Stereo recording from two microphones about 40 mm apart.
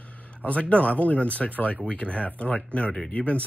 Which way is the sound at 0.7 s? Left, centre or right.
Left.